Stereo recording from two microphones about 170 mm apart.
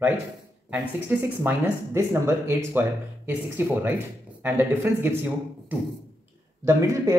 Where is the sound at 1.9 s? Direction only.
15° right (ahead or behind).